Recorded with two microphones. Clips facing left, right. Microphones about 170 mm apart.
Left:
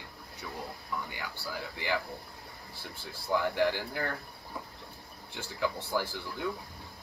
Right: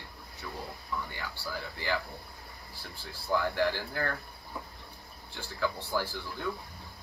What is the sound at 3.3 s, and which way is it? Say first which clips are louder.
Speech: left 1 dB; 15° left (ahead or behind).